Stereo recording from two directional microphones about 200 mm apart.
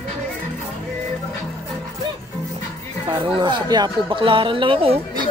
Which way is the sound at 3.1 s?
25° right (ahead or behind).